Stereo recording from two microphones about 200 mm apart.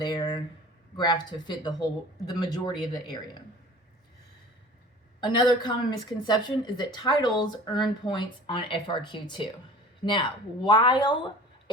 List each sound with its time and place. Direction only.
0.0 s speech: 20° left (ahead or behind)
5.2 s speech: 25° left (ahead or behind)